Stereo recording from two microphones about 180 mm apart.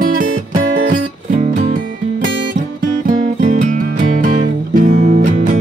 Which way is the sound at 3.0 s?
45° right (ahead or behind).